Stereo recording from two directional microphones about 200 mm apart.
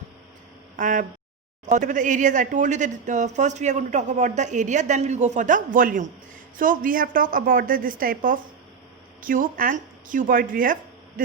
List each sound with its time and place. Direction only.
0.8 s a woman's voice: 40° right (ahead or behind)